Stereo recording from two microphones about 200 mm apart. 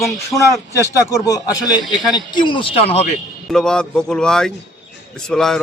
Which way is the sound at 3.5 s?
5° left (ahead or behind).